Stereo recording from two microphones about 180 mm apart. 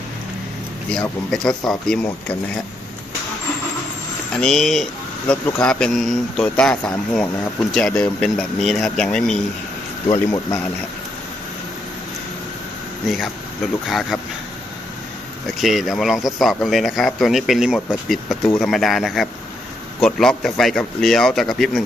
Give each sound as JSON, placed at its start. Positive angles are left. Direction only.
{"t": 0.9, "sound": "speech", "side_deg": 5}
{"t": 4.4, "sound": "speech", "side_deg": 0}
{"t": 10.1, "sound": "speech", "side_deg": 20}
{"t": 13.1, "sound": "speech", "side_deg": 0}
{"t": 15.4, "sound": "speech", "side_deg": 0}